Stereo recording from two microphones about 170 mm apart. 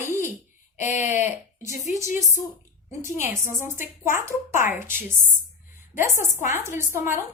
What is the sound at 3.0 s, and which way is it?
A woman's voice, 15° right (ahead or behind).